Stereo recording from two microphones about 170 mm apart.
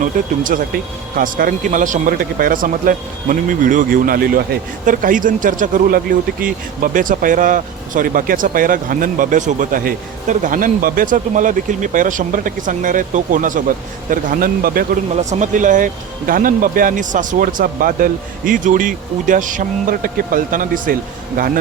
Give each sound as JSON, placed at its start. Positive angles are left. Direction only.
{"t": 0.0, "sound": "speech", "side_deg": -50}
{"t": 15.1, "sound": "speech", "side_deg": -45}